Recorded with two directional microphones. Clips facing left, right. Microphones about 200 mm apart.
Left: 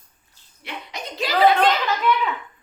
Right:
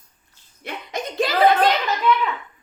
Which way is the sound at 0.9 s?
50° right (ahead or behind).